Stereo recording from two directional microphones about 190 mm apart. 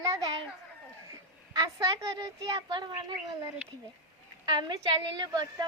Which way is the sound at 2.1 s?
20° right (ahead or behind).